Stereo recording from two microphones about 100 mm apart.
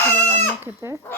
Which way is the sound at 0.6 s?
25° right (ahead or behind).